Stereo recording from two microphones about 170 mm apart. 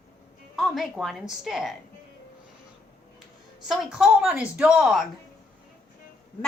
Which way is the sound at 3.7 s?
5° right (ahead or behind).